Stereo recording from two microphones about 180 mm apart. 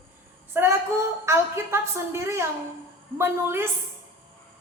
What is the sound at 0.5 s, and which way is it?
Female singing, 15° right (ahead or behind).